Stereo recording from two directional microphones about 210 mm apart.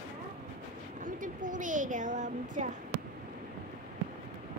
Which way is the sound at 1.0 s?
40° right (ahead or behind).